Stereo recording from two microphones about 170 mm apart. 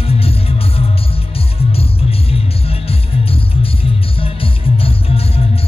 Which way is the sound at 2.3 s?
35° left (ahead or behind).